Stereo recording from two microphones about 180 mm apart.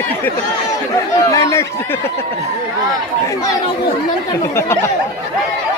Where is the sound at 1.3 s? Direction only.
15° left (ahead or behind).